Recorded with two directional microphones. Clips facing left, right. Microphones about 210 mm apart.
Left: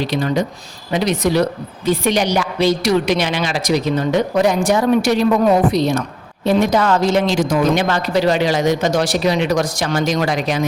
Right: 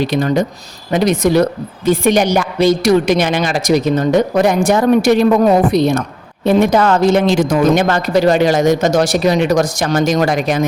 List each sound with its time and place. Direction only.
0.0 s a woman's voice: 50° right (ahead or behind)